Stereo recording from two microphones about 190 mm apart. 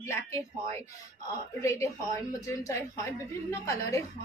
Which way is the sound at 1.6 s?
15° left (ahead or behind).